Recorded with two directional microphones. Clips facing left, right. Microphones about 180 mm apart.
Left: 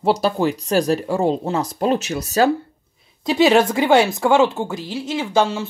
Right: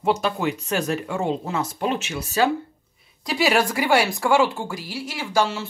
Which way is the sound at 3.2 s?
25° left (ahead or behind).